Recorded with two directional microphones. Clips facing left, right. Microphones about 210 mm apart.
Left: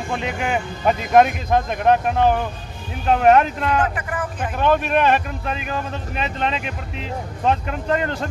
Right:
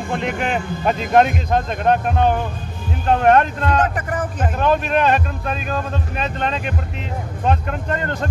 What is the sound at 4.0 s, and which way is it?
Speech, 45° right (ahead or behind).